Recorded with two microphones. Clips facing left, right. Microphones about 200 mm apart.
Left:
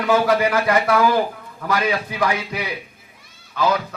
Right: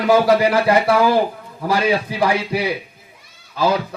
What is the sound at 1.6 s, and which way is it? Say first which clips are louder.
A man's voice: right 3 dB; 30° right (ahead or behind).